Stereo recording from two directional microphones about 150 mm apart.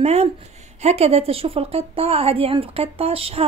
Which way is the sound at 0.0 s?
45° right (ahead or behind).